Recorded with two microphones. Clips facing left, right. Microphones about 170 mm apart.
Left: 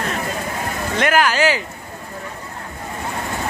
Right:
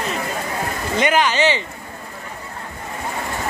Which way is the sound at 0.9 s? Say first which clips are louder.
Even; 5° left (ahead or behind).